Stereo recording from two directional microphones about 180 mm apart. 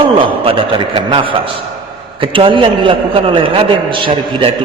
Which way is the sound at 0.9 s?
30° right (ahead or behind).